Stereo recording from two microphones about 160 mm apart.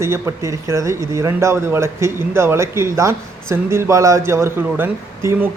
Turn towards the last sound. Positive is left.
turn(degrees=-10)  # may be behind; listen again after turning